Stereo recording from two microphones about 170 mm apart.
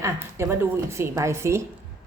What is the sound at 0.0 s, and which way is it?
A woman's voice, 15° right (ahead or behind).